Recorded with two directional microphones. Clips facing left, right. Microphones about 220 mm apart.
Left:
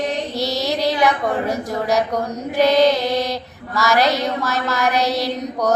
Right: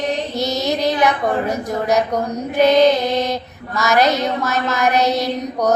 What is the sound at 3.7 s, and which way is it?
A woman's voice, 20° right (ahead or behind).